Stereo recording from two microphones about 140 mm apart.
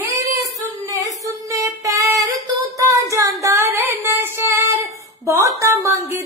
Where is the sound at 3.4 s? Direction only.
20° right (ahead or behind).